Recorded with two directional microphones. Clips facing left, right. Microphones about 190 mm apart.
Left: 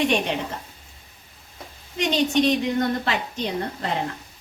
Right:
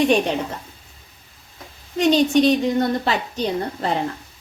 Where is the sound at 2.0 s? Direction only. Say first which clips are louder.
Right 5 dB; 35° right (ahead or behind).